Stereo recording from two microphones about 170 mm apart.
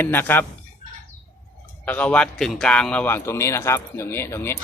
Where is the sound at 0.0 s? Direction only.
10° left (ahead or behind).